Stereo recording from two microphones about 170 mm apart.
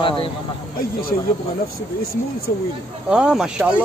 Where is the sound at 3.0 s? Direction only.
5° right (ahead or behind).